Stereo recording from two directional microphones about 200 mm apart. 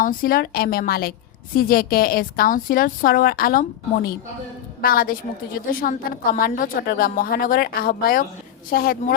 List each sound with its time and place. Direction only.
0.0 s a woman's voice: 45° left (ahead or behind)